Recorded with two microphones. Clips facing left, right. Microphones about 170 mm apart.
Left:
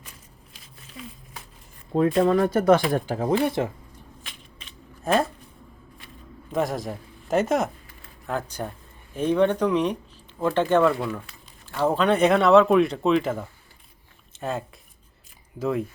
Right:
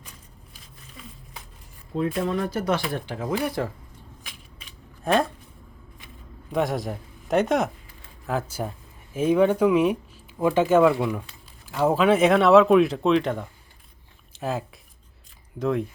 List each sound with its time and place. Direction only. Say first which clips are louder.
1.9 s speech: left 6 dB; 50° left (ahead or behind)
3.2 s speech: left 3 dB; 25° left (ahead or behind)
4.3 s a sound: left 1 dB; 5° right (ahead or behind)
6.5 s a man's voice: right 1 dB; centre (ahead or behind)